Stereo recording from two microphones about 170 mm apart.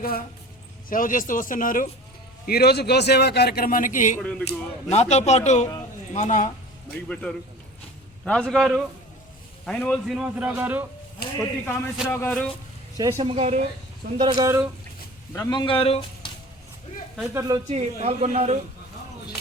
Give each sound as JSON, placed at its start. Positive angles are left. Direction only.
{"t": 0.0, "sound": "speech", "side_deg": 60}
{"t": 2.5, "sound": "a man's voice", "side_deg": 70}
{"t": 4.2, "sound": "a man's voice", "side_deg": 5}
{"t": 4.4, "sound": "speech", "side_deg": 40}
{"t": 7.1, "sound": "a man's voice", "side_deg": 5}
{"t": 11.2, "sound": "speech", "side_deg": 65}
{"t": 12.0, "sound": "a man's voice", "side_deg": 10}
{"t": 13.1, "sound": "speech", "side_deg": -40}
{"t": 14.2, "sound": "speech", "side_deg": -25}
{"t": 15.3, "sound": "speech", "side_deg": 25}
{"t": 17.3, "sound": "speech", "side_deg": -20}
{"t": 17.7, "sound": "speech", "side_deg": -40}